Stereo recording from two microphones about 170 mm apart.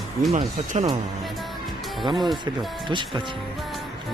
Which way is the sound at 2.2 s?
Centre (ahead or behind).